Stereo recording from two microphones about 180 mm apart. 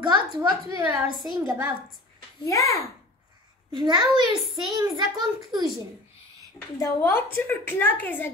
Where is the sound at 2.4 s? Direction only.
20° left (ahead or behind).